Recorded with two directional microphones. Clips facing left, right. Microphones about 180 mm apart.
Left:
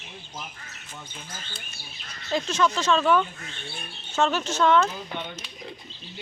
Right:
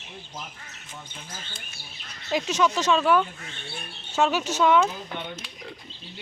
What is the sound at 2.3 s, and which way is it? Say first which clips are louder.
A man's voice: right 1 dB; 15° right (ahead or behind).